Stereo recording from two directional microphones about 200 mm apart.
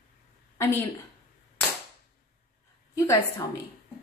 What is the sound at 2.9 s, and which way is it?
Speech, 15° left (ahead or behind).